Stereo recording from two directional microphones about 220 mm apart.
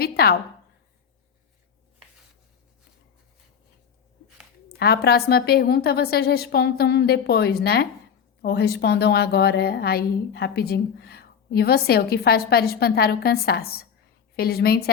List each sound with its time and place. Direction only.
0.0 s a woman's voice: 45° left (ahead or behind)
4.8 s a woman's voice: 45° left (ahead or behind)